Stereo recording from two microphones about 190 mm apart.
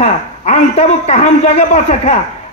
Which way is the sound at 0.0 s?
35° left (ahead or behind).